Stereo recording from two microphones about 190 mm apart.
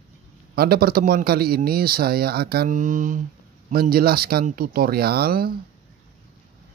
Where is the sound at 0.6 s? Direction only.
50° right (ahead or behind).